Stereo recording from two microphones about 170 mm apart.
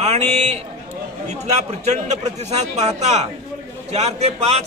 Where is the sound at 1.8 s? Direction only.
40° right (ahead or behind).